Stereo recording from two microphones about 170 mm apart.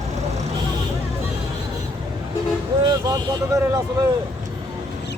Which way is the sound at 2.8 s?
25° right (ahead or behind).